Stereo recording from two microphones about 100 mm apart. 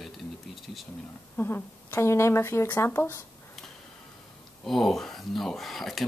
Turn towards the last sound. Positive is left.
turn(degrees=0)  # may be behind; listen again after turning